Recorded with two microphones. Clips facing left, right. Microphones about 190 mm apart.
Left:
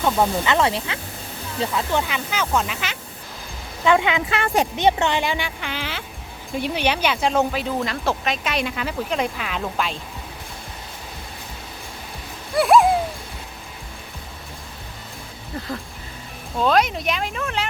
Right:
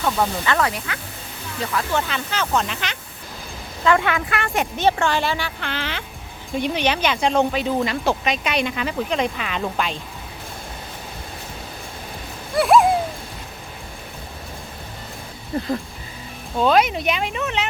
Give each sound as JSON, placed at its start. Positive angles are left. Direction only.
{"t": 0.0, "sound": "speech", "side_deg": 15}
{"t": 3.8, "sound": "speech", "side_deg": 15}
{"t": 4.8, "sound": "speech", "side_deg": 20}
{"t": 12.5, "sound": "a sound", "side_deg": 0}
{"t": 16.6, "sound": "speech", "side_deg": 0}